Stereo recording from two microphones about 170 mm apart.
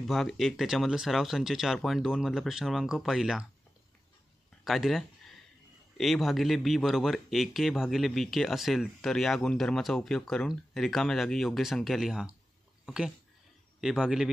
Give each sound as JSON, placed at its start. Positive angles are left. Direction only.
{"t": 0.0, "sound": "speech", "side_deg": 0}
{"t": 4.6, "sound": "speech", "side_deg": 0}